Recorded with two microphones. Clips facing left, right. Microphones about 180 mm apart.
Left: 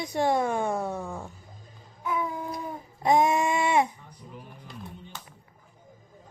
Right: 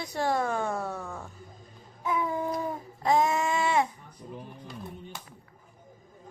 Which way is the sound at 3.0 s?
15° left (ahead or behind).